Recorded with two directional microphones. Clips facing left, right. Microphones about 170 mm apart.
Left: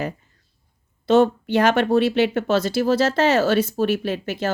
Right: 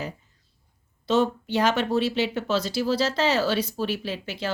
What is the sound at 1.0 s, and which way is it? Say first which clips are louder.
Speech: left 6 dB; 55° left (ahead or behind).